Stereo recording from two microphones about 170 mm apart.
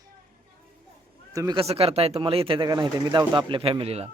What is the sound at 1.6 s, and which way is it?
Speech, 35° right (ahead or behind).